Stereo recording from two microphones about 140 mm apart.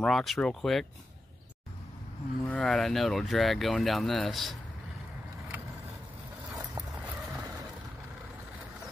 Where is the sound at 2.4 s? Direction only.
5° left (ahead or behind).